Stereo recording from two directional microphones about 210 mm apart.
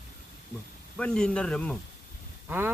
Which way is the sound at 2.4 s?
10° right (ahead or behind).